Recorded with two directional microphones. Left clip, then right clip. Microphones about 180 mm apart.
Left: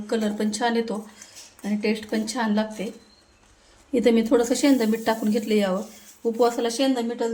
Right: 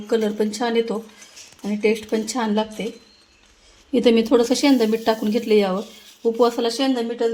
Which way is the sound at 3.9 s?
25° right (ahead or behind).